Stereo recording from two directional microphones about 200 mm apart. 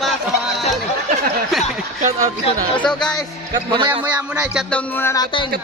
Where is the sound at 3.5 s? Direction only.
25° right (ahead or behind).